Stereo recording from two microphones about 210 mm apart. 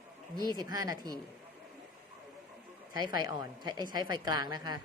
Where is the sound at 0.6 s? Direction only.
15° right (ahead or behind).